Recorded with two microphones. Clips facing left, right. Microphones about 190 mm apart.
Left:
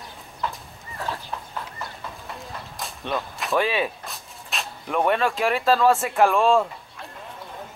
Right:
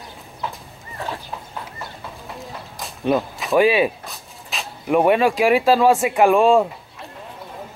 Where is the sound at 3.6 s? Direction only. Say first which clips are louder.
Right 8 dB; 10° right (ahead or behind).